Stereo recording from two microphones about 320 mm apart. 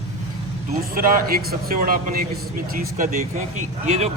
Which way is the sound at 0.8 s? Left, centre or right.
Right.